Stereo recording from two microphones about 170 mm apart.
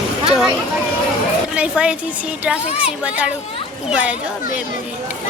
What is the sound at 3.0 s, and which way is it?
A child's voice, 5° right (ahead or behind).